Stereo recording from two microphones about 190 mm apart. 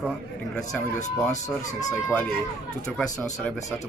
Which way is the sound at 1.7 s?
20° left (ahead or behind).